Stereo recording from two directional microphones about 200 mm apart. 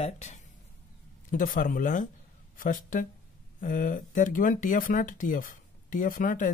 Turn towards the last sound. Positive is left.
turn(degrees=40)  # may be behind; listen again after turning